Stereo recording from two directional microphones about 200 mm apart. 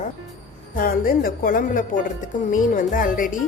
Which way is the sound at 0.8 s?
45° left (ahead or behind).